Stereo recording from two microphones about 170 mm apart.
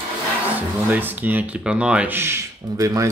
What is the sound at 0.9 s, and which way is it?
Speech, 10° right (ahead or behind).